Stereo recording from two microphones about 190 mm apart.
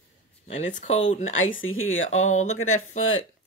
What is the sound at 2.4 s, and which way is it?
Speech, 90° left.